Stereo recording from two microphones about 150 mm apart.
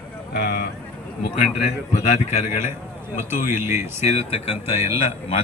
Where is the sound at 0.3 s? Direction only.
90° left.